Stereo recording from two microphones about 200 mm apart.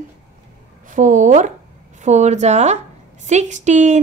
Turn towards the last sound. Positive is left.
turn(degrees=-35)  # may be behind; listen again after turning